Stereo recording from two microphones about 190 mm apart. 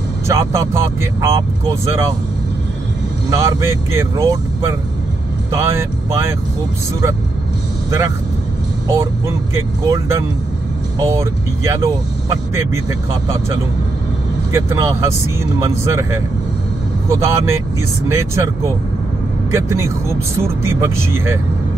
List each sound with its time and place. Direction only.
0.3 s speech: 15° right (ahead or behind)
3.3 s speech: 15° right (ahead or behind)
8.8 s speech: 15° right (ahead or behind)
14.5 s speech: 15° right (ahead or behind)